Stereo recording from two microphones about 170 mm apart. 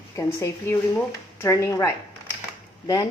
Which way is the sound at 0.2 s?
15° left (ahead or behind).